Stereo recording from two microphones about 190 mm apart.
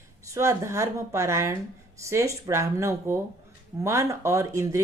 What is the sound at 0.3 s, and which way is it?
A woman's voice, 15° right (ahead or behind).